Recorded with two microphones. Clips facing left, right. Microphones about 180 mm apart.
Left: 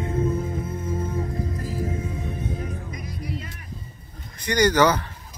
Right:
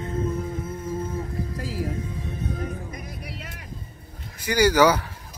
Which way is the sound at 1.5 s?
80° right.